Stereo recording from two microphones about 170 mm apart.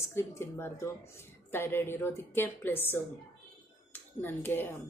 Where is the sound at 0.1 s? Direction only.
15° left (ahead or behind).